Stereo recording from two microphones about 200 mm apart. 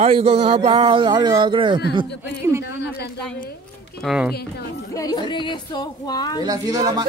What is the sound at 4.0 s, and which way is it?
Speech, centre (ahead or behind).